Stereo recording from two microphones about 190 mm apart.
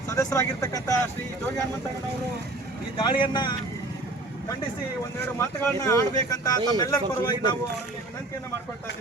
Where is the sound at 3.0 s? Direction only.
25° left (ahead or behind).